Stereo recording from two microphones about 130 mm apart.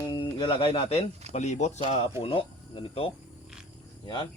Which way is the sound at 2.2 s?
45° left (ahead or behind).